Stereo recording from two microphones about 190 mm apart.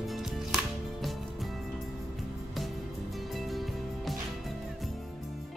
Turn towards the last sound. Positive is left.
turn(degrees=0)  # may be behind; listen again after turning